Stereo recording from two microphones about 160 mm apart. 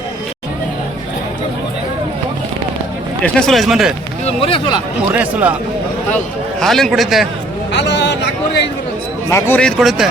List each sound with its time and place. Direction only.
3.2 s speech: 5° left (ahead or behind)
4.4 s speech: 35° left (ahead or behind)
5.1 s speech: 10° right (ahead or behind)
6.6 s speech: centre (ahead or behind)
7.7 s a sound: 90° left
9.3 s speech: 10° left (ahead or behind)